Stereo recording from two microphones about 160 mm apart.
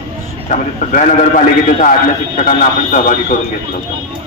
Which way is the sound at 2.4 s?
50° left (ahead or behind).